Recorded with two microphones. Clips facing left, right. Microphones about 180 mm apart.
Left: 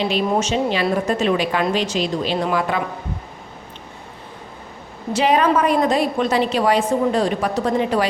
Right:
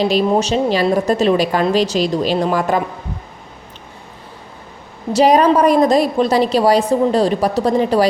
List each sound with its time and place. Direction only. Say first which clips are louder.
0.0 s a woman's voice: right 5 dB; 40° right (ahead or behind)
5.1 s a woman's voice: right 5 dB; 40° right (ahead or behind)